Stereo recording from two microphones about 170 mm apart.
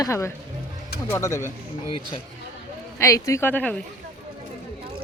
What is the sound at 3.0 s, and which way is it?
Speech, 20° left (ahead or behind).